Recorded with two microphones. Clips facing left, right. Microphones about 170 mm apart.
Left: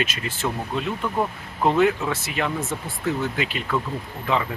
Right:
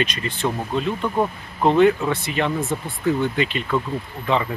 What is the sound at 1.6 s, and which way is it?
Speech, 5° left (ahead or behind).